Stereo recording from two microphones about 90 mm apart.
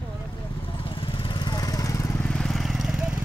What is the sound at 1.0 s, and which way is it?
Vehicle, 75° left (ahead or behind).